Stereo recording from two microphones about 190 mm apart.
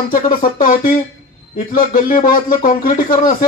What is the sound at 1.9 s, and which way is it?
A man's voice, 45° left (ahead or behind).